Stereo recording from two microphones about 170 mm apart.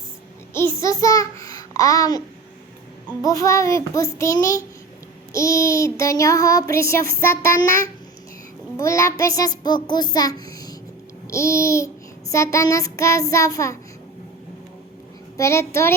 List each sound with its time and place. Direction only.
0.5 s a child's voice: 15° left (ahead or behind)
3.2 s child singing: 20° left (ahead or behind)
8.8 s child singing: 15° left (ahead or behind)
15.4 s child singing: 15° left (ahead or behind)